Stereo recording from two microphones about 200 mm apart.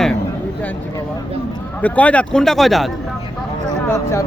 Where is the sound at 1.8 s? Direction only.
5° left (ahead or behind).